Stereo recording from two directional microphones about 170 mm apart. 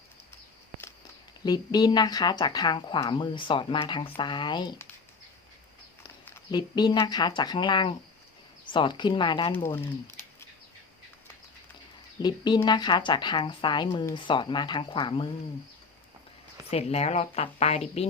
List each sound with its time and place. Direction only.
1.5 s speech: 25° left (ahead or behind)
6.5 s speech: 25° left (ahead or behind)
12.2 s speech: 25° left (ahead or behind)
16.6 s a woman's voice: 35° left (ahead or behind)